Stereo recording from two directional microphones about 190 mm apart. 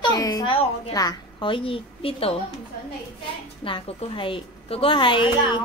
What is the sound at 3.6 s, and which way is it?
A woman's voice, 30° left (ahead or behind).